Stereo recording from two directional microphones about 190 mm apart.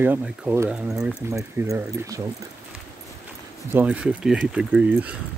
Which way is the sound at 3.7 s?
10° right (ahead or behind).